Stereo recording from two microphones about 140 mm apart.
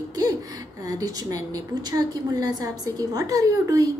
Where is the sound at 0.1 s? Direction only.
25° right (ahead or behind).